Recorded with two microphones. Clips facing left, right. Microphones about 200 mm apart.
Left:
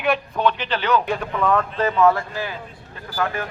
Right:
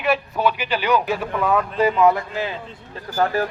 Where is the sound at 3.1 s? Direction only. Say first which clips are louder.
Right 5 dB; 35° right (ahead or behind).